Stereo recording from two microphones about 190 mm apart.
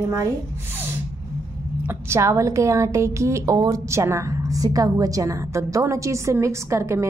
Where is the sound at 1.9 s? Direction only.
15° right (ahead or behind).